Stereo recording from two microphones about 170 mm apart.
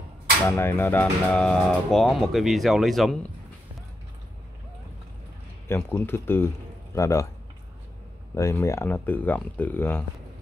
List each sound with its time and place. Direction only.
0.5 s speech: 15° left (ahead or behind)
5.7 s speech: 10° left (ahead or behind)
8.4 s speech: 20° left (ahead or behind)